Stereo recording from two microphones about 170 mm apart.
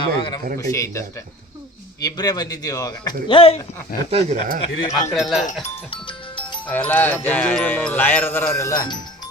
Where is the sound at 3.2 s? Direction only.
30° left (ahead or behind).